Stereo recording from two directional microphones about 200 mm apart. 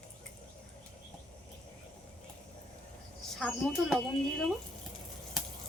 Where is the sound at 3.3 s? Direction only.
Centre (ahead or behind).